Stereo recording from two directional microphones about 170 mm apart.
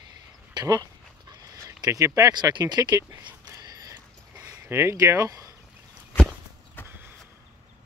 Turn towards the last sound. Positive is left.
turn(degrees=-15)  # may be behind; listen again after turning